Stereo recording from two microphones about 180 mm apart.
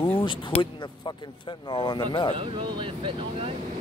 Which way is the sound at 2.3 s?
25° right (ahead or behind).